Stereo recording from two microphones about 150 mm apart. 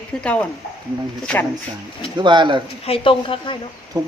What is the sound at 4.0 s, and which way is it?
Speech, 25° right (ahead or behind).